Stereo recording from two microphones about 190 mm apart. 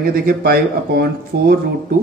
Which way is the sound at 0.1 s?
55° right (ahead or behind).